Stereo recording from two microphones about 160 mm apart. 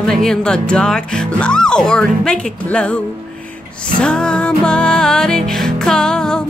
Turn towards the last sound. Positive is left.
turn(degrees=5)  # may be behind; listen again after turning